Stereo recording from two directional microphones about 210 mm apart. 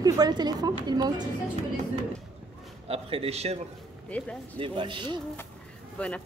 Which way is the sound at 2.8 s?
25° right (ahead or behind).